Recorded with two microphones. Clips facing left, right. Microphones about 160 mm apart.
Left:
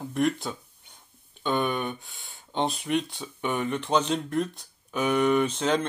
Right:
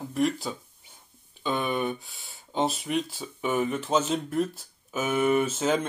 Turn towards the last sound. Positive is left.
turn(degrees=-5)  # may be behind; listen again after turning